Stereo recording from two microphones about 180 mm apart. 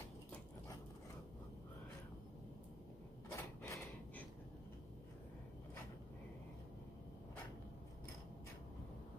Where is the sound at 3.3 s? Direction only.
15° left (ahead or behind).